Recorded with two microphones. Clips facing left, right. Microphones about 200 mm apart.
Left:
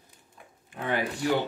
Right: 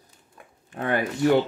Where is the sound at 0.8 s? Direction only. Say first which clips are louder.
Right 6 dB; 55° right (ahead or behind).